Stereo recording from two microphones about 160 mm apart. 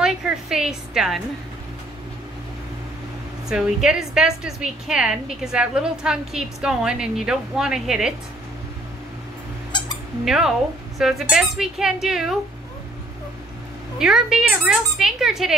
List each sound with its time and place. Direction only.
0.0 s a woman's voice: 5° right (ahead or behind)
3.4 s a woman's voice: 5° right (ahead or behind)
9.7 s a sound: 30° left (ahead or behind)
10.2 s a woman's voice: 5° right (ahead or behind)
13.9 s a woman's voice: 5° right (ahead or behind)